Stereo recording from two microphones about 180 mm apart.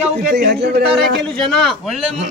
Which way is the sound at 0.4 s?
70° right (ahead or behind).